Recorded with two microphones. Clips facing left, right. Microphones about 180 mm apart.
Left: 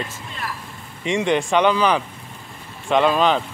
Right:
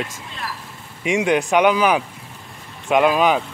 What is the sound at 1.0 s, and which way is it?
Speech, 5° right (ahead or behind).